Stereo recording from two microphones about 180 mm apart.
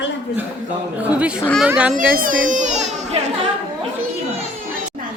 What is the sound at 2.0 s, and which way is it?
A child's voice, 50° right (ahead or behind).